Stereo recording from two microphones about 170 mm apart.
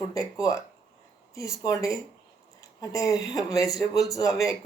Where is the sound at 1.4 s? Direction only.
20° left (ahead or behind).